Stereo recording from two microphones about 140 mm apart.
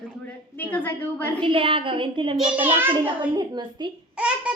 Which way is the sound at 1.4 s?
40° right (ahead or behind).